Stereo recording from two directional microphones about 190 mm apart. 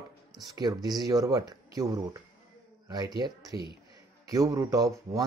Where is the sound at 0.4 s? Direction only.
20° right (ahead or behind).